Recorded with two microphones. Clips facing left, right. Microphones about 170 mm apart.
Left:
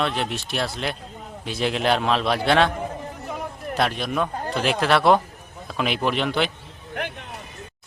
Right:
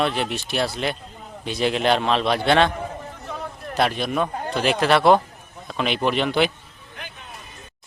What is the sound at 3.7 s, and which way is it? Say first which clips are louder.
A man's voice: right 2 dB; centre (ahead or behind).